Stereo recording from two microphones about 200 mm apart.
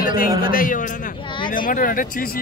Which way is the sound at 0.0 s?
45° left (ahead or behind).